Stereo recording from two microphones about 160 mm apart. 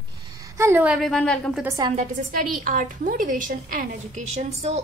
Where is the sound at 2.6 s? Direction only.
60° right (ahead or behind).